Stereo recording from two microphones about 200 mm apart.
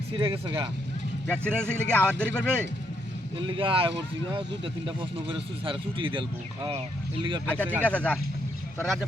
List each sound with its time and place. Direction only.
0.1 s speech: 25° right (ahead or behind)
1.3 s speech: 5° left (ahead or behind)
3.3 s speech: 25° right (ahead or behind)
7.4 s speech: 10° left (ahead or behind)